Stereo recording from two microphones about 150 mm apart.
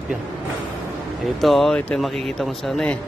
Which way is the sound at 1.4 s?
Centre (ahead or behind).